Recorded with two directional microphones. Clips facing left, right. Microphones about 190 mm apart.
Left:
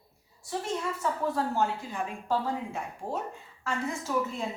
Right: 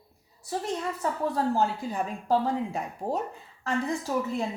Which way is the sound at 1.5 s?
35° right (ahead or behind).